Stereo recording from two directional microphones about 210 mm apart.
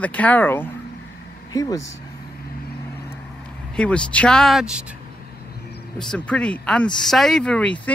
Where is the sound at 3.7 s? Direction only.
5° left (ahead or behind).